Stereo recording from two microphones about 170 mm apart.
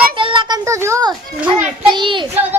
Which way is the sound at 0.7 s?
15° right (ahead or behind).